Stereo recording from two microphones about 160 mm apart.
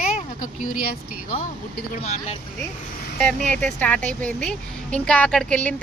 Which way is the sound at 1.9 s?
40° left (ahead or behind).